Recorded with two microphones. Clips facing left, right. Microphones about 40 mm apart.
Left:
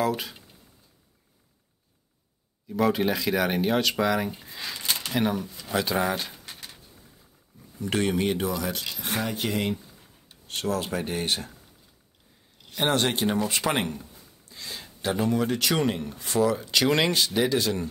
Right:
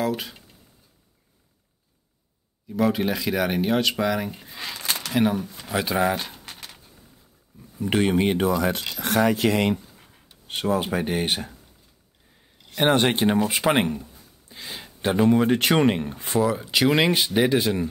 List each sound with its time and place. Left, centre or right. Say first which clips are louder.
0.0 s speech: even; centre
2.7 s speech: right 1 dB; centre
6.1 s speech: right 2 dB; right
6.4 s a sound: right 2 dB; right
7.8 s speech: right 4 dB; right
8.4 s speech: right 6 dB; right
9.0 s speech: right 9 dB; right
10.5 s speech: right 4 dB; right
12.7 s speech: right 5 dB; right
14.5 s a sound: right 2 dB; right
15.1 s speech: right 7 dB; right
16.3 s speech: right 1 dB; centre
17.1 s speech: right 3 dB; right